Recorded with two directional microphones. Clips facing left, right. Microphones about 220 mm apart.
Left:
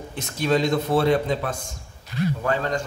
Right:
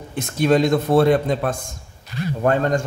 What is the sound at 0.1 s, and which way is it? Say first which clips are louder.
A man's voice: right 5 dB; 55° right (ahead or behind).